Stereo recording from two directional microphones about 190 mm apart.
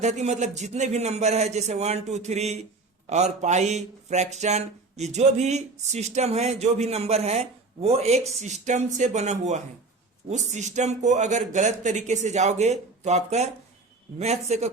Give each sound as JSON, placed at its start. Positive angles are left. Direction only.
{"t": 0.0, "sound": "speech", "side_deg": -35}